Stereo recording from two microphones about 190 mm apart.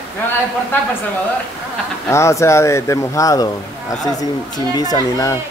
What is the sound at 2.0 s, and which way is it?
Speech, 15° left (ahead or behind).